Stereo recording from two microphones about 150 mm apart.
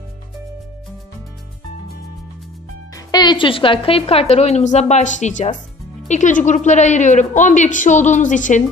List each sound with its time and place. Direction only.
3.1 s a woman's voice: 30° left (ahead or behind); by 8.6 s 55° left (ahead or behind)